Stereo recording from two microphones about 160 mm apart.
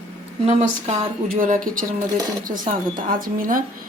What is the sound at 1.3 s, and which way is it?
A woman's voice, 55° right (ahead or behind).